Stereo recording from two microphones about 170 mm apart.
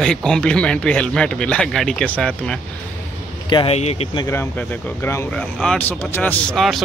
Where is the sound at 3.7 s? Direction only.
40° left (ahead or behind).